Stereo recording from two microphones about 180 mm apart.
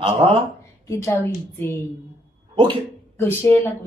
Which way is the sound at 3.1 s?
10° left (ahead or behind).